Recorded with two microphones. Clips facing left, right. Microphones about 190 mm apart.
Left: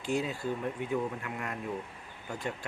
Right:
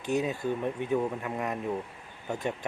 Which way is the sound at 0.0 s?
20° right (ahead or behind).